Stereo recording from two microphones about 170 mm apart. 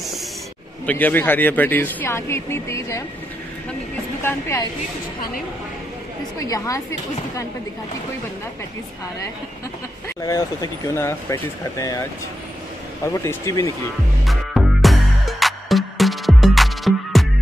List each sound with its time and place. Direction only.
0.8 s speech: 10° left (ahead or behind)
4.2 s speech: 15° left (ahead or behind)
6.4 s speech: 20° left (ahead or behind)
10.0 s speech: 20° left (ahead or behind)
13.0 s speech: 15° left (ahead or behind)
14.2 s music: centre (ahead or behind)